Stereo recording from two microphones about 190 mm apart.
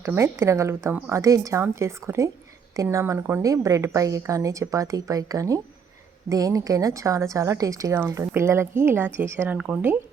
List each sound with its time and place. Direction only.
0.0 s speech: 15° right (ahead or behind)